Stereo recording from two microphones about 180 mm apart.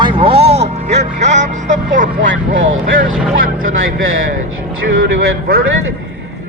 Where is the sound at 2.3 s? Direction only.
90° right.